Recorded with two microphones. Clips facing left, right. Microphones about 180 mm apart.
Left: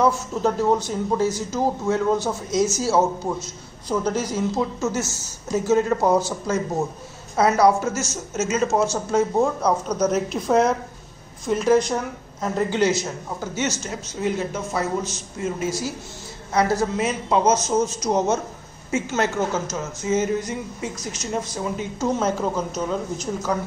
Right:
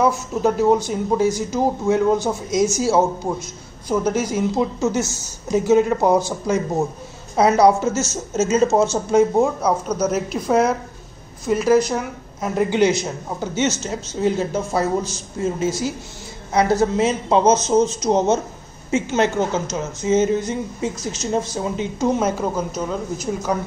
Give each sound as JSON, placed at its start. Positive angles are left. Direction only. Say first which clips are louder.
{"t": 0.0, "sound": "a woman's voice", "louder": "right 2 dB", "side_deg": -10}